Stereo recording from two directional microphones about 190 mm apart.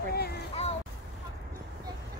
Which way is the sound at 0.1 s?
55° left (ahead or behind).